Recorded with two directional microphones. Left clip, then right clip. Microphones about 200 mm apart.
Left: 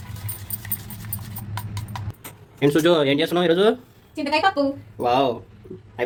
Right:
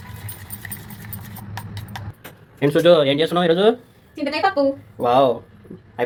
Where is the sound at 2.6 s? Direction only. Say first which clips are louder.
Right 4 dB; 10° left (ahead or behind).